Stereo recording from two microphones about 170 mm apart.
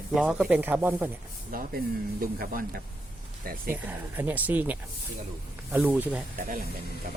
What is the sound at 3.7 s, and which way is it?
Speech, 10° right (ahead or behind).